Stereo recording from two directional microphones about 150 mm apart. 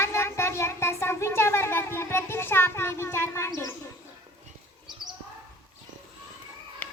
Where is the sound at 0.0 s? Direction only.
20° left (ahead or behind).